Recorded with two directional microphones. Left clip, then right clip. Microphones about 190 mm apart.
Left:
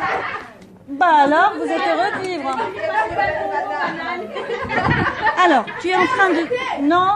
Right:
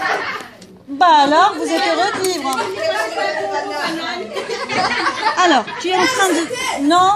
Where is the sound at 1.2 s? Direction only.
15° right (ahead or behind).